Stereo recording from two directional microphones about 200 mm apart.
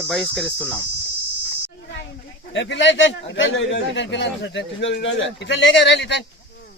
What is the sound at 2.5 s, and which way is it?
A man's voice, 65° left (ahead or behind).